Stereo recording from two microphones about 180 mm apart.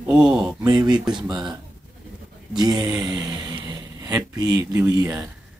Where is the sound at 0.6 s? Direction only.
20° right (ahead or behind).